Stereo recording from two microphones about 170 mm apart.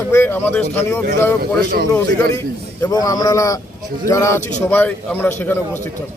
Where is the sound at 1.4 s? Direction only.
65° right (ahead or behind).